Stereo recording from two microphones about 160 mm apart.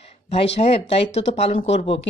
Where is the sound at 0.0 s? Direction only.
40° left (ahead or behind).